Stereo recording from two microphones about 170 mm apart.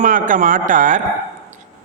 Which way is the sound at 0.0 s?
50° right (ahead or behind).